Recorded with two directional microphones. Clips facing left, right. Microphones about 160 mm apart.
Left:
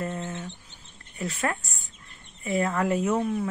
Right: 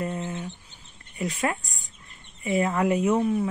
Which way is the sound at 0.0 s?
15° right (ahead or behind).